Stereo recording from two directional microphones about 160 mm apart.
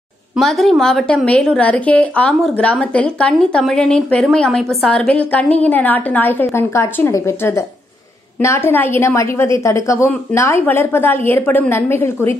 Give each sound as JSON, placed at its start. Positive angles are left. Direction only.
{"t": 0.4, "sound": "a woman's voice", "side_deg": 0}